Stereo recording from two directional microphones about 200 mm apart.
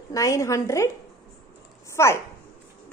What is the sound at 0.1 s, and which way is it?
Speech, 15° left (ahead or behind).